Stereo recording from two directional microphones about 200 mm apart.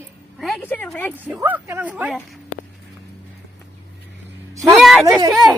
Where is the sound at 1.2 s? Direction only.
10° right (ahead or behind).